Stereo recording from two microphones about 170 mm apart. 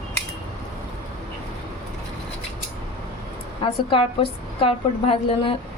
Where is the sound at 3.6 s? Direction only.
30° left (ahead or behind).